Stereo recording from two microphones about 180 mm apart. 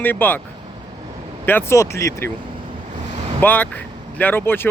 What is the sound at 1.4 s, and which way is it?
Speech, 10° left (ahead or behind).